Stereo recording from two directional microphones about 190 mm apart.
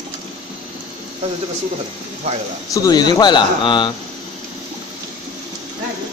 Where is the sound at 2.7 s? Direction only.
20° left (ahead or behind).